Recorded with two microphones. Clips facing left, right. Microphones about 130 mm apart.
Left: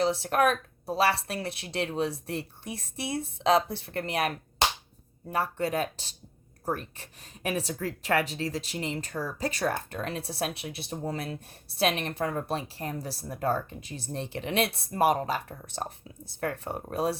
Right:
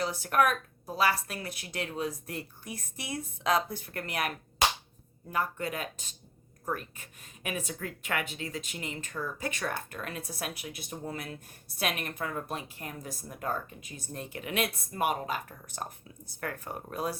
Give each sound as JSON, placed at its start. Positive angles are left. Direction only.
{"t": 0.0, "sound": "speech", "side_deg": 25}